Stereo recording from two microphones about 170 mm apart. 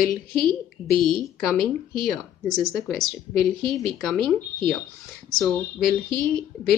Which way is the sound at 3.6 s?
Centre (ahead or behind).